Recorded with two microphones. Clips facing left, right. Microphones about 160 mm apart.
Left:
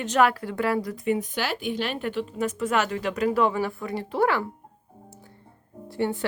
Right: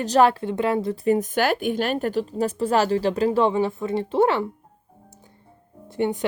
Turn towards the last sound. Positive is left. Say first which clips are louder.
# right 3 dB
turn(degrees=-20)  # may be behind; listen again after turning